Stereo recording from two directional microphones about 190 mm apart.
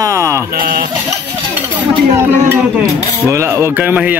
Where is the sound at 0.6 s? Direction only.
50° right (ahead or behind).